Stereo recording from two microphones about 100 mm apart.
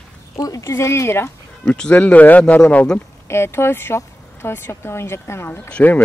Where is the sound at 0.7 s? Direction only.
25° left (ahead or behind).